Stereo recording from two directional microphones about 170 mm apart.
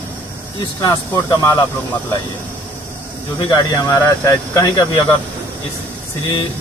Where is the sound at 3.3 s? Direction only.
25° left (ahead or behind).